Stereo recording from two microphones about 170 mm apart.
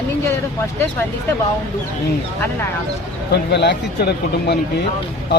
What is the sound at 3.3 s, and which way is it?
Speech, 90° left.